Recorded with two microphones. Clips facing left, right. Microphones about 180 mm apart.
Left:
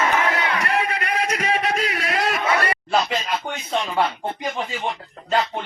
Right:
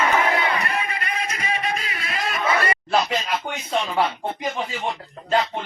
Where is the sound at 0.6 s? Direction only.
75° left (ahead or behind).